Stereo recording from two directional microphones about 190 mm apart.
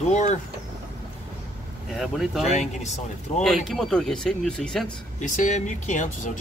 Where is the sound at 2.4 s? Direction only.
40° left (ahead or behind).